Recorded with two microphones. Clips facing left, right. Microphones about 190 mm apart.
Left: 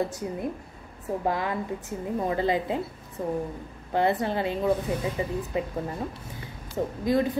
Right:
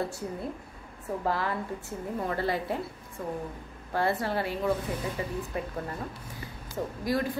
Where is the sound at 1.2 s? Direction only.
15° left (ahead or behind).